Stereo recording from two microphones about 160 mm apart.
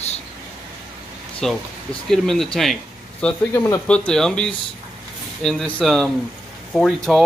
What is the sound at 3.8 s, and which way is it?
Speech, 5° left (ahead or behind).